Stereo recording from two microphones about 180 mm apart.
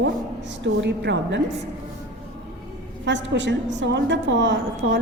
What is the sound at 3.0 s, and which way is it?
A woman's voice, 85° right.